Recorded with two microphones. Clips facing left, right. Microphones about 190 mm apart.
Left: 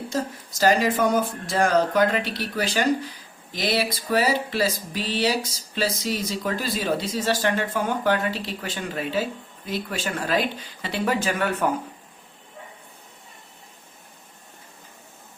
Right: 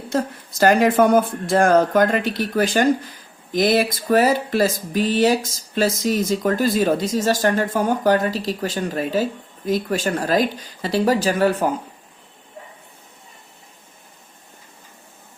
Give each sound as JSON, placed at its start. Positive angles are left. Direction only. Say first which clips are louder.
{"t": 0.6, "sound": "speech", "louder": "right 5 dB", "side_deg": -55}